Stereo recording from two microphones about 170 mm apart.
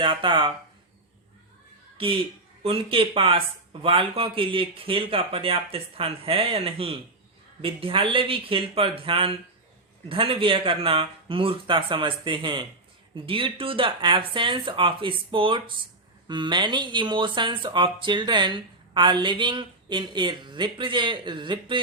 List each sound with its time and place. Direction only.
0.0 s speech: 30° right (ahead or behind)
2.0 s speech: 30° right (ahead or behind)